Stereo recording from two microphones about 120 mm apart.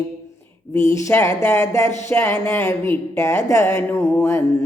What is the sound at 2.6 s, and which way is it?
Music, 20° left (ahead or behind).